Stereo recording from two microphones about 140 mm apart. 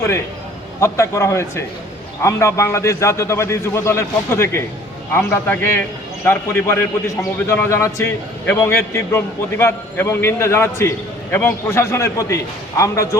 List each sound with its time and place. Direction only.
0.8 s a man's voice: 20° left (ahead or behind)